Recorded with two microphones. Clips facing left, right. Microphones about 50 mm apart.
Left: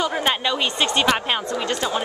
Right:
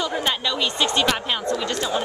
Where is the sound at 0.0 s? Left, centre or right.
Centre.